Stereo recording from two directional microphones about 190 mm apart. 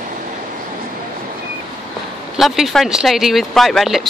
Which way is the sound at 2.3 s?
Centre (ahead or behind).